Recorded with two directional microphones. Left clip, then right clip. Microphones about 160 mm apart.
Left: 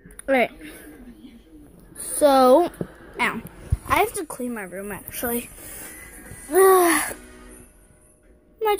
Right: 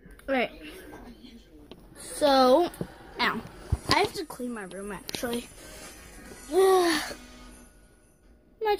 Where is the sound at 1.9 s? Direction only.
15° left (ahead or behind).